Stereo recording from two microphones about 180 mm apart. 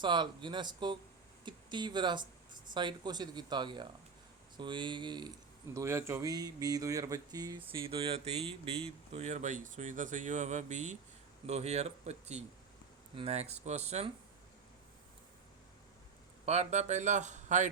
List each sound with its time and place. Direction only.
0.0 s speech: 25° right (ahead or behind)
16.5 s speech: 40° right (ahead or behind)